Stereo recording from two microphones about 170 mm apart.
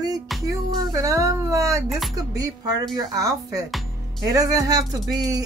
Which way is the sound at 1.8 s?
Centre (ahead or behind).